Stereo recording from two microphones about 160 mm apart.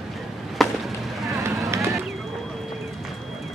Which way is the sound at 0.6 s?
Centre (ahead or behind).